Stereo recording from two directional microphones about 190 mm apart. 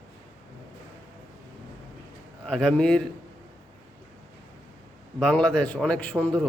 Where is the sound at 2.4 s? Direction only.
5° left (ahead or behind).